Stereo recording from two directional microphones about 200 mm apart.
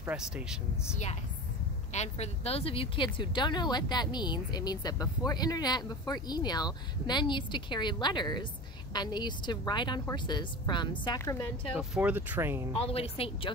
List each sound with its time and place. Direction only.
0.0 s speech: 5° right (ahead or behind)
1.9 s a woman's voice: 35° left (ahead or behind); by 11.4 s 15° left (ahead or behind)
11.9 s speech: 10° right (ahead or behind)
12.8 s a woman's voice: 30° left (ahead or behind)